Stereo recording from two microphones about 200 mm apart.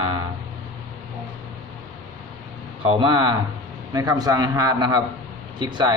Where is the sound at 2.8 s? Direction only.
25° right (ahead or behind).